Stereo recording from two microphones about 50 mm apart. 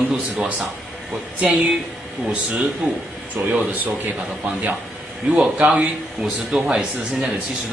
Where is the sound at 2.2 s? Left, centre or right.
Centre.